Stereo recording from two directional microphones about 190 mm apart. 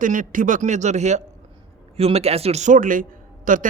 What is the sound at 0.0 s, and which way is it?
A man's voice, 45° right (ahead or behind).